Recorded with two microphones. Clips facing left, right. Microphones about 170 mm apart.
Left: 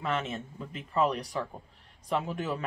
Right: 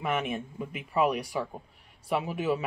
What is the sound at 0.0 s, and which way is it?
Speech, 15° right (ahead or behind).